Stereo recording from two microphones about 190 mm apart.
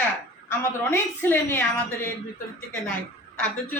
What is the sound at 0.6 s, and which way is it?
A woman's voice, 10° left (ahead or behind).